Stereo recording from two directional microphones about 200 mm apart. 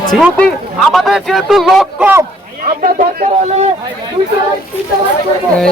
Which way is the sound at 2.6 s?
40° right (ahead or behind).